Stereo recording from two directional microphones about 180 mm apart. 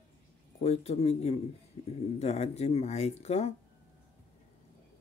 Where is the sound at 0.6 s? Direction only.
35° left (ahead or behind).